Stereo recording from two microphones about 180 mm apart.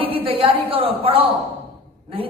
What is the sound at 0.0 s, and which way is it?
Speech, 30° right (ahead or behind).